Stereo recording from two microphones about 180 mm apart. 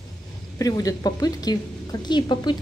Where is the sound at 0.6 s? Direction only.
20° left (ahead or behind).